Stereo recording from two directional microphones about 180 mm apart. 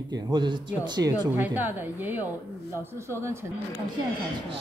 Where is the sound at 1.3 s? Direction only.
10° right (ahead or behind).